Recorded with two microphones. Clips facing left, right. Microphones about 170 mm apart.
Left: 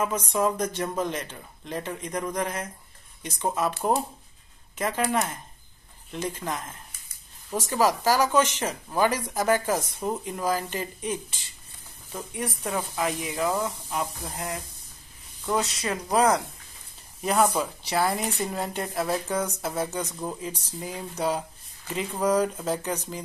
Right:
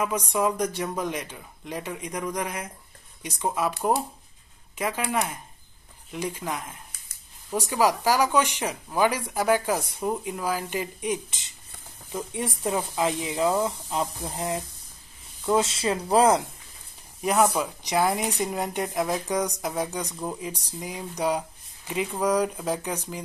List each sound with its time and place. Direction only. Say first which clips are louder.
0.0 s speech: even; 10° right (ahead or behind)
12.1 s speech: right 2 dB; 25° right (ahead or behind)
17.2 s speech: right 1 dB; 5° right (ahead or behind)